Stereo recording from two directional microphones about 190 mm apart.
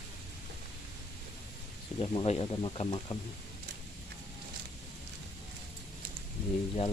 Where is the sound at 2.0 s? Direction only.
30° left (ahead or behind).